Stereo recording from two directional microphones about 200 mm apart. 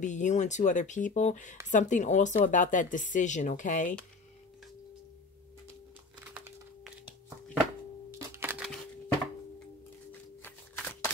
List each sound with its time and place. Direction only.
0.0 s speech: 35° left (ahead or behind)
8.1 s music: 10° right (ahead or behind)
10.4 s a sound: 10° left (ahead or behind)